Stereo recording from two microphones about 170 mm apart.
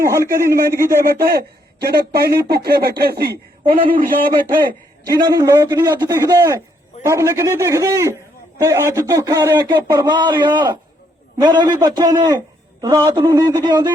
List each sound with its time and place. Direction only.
0.0 s a man's voice: 15° right (ahead or behind)
1.8 s speech: 65° right (ahead or behind)
5.0 s a man's voice: 20° right (ahead or behind)